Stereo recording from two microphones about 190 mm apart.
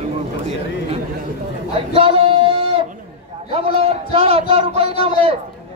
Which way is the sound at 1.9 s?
30° right (ahead or behind).